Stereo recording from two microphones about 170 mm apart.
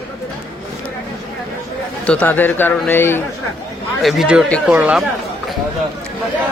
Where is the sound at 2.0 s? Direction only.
10° left (ahead or behind).